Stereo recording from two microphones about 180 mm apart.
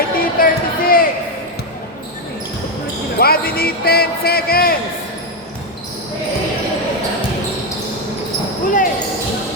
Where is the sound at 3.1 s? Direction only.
55° left (ahead or behind).